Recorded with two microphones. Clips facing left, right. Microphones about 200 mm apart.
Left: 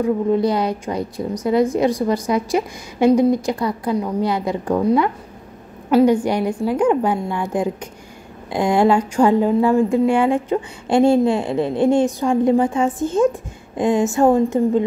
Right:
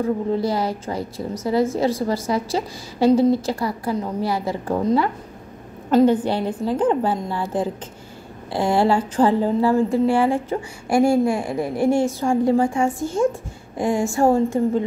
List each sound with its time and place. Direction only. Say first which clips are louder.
0.0 s a woman's voice: left 4 dB; 20° left (ahead or behind)